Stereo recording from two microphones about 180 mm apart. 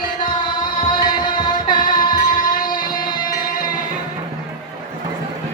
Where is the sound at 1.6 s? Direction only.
50° left (ahead or behind).